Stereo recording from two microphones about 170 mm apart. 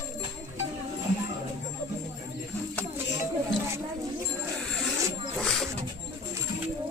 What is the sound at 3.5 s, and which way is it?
Music, 90° left.